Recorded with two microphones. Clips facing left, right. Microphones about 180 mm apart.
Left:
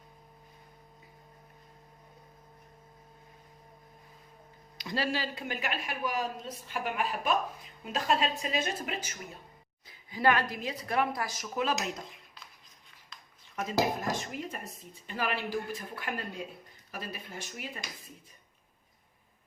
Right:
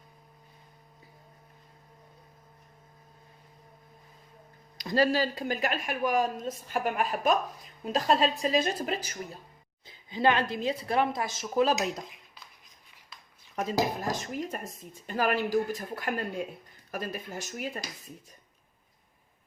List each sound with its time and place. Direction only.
4.8 s a woman's voice: 40° right (ahead or behind)
9.8 s a woman's voice: 25° right (ahead or behind)
13.6 s speech: 40° right (ahead or behind)